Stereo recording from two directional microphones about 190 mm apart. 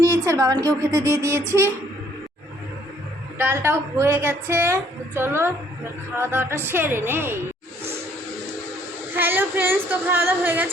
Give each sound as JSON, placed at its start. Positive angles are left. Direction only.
{"t": 0.3, "sound": "a woman's voice", "side_deg": -20}
{"t": 3.3, "sound": "a woman's voice", "side_deg": -10}
{"t": 9.1, "sound": "a woman's voice", "side_deg": -10}